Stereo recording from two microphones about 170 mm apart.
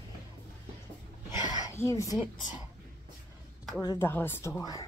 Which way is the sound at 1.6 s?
15° left (ahead or behind).